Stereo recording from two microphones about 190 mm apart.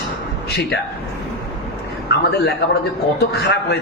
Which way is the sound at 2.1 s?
60° left (ahead or behind).